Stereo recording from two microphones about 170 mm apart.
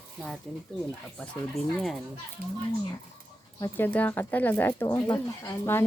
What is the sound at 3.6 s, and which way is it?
A woman's voice, 10° left (ahead or behind).